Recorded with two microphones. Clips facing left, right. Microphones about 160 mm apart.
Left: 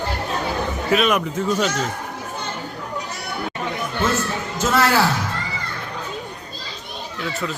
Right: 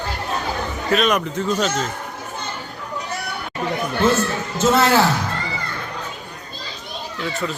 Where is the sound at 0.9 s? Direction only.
5° left (ahead or behind).